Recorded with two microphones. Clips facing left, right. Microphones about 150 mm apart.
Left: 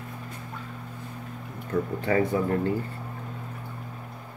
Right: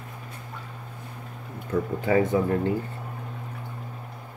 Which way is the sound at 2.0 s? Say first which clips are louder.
Right 3 dB; 20° right (ahead or behind).